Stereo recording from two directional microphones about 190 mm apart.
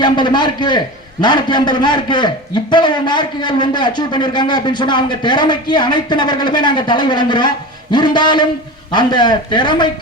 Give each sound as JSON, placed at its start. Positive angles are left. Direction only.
{"t": 0.0, "sound": "a man's voice", "side_deg": 25}